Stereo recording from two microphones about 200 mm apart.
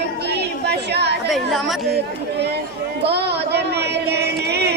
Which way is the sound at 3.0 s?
55° right (ahead or behind).